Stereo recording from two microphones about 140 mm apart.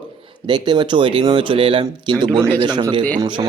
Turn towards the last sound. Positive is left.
turn(degrees=-35)  # may be behind; listen again after turning